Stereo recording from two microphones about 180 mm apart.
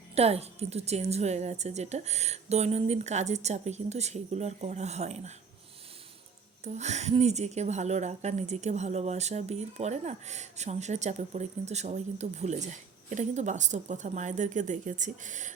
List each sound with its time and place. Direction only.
0.1 s a woman's voice: 35° right (ahead or behind)
6.7 s a woman's voice: 40° right (ahead or behind)